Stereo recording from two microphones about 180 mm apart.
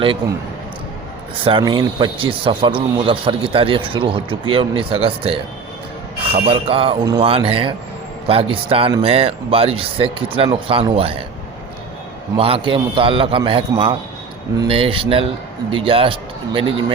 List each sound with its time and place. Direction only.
1.5 s speech: 30° right (ahead or behind)
12.4 s speech: 30° right (ahead or behind)